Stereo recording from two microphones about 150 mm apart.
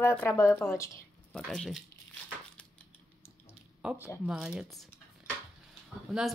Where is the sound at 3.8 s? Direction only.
10° right (ahead or behind).